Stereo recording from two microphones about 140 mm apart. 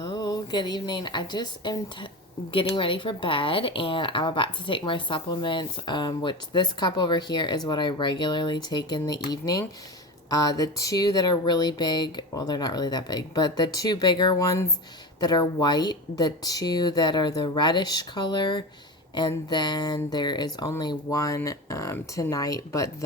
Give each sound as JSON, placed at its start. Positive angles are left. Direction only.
{"t": 0.0, "sound": "speech", "side_deg": 30}